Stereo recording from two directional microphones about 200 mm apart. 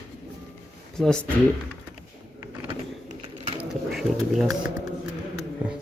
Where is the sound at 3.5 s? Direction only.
Centre (ahead or behind).